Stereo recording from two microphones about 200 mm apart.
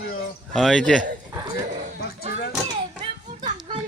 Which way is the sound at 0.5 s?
Centre (ahead or behind).